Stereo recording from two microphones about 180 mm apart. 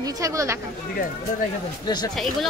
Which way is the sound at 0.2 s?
15° right (ahead or behind).